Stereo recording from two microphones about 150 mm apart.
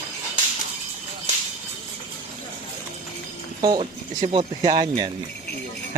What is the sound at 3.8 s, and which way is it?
Speech, 40° right (ahead or behind).